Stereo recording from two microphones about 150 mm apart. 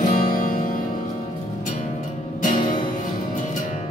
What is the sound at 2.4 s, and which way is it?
Music, 60° left (ahead or behind).